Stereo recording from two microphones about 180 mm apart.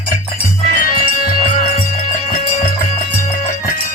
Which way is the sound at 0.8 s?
50° left (ahead or behind).